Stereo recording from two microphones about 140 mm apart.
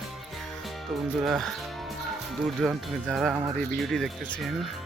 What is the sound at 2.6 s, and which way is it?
Speech, 5° right (ahead or behind).